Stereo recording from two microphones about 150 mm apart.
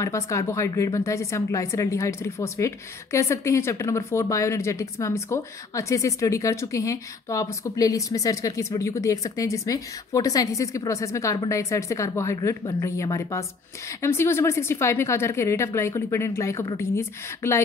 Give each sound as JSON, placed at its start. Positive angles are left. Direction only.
{"t": 0.0, "sound": "a woman's voice", "side_deg": 20}